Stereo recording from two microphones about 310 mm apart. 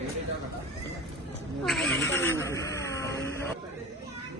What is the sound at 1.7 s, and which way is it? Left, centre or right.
Speech, centre.